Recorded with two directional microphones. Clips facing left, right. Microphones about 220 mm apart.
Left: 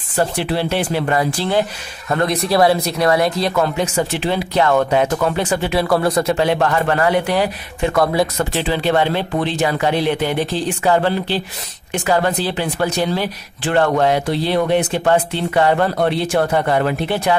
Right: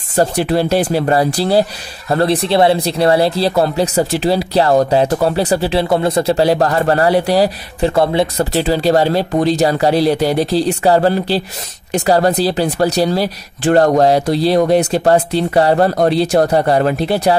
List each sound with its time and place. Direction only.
0.1 s speech: 40° right (ahead or behind)